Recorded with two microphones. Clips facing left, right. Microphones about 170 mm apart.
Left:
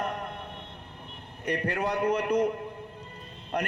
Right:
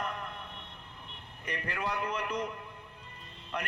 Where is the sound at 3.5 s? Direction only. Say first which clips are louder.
Left 7 dB; 40° left (ahead or behind).